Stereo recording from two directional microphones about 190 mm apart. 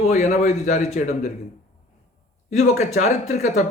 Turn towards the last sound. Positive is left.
turn(degrees=40)  # may be behind; listen again after turning